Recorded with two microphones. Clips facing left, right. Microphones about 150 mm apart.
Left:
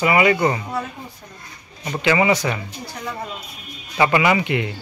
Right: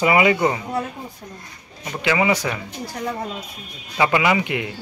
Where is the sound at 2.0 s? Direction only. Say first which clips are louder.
Left 2 dB; 5° right (ahead or behind).